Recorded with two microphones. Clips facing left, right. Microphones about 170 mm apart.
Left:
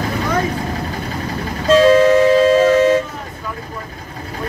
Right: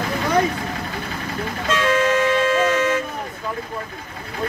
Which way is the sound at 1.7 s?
35° left (ahead or behind).